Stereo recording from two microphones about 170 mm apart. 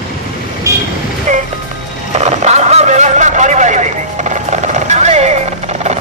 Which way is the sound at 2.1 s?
40° right (ahead or behind).